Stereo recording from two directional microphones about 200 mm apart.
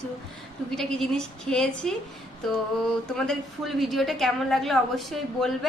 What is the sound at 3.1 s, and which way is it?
A woman's voice, centre (ahead or behind).